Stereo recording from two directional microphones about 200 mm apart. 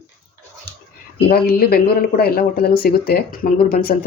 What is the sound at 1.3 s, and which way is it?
Speech, 50° left (ahead or behind).